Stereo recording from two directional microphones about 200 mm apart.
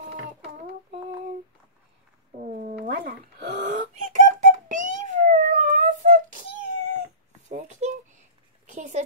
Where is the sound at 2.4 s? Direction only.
45° right (ahead or behind); by 3.9 s 65° right (ahead or behind).